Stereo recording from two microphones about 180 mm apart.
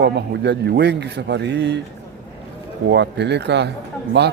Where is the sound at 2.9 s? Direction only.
70° right (ahead or behind).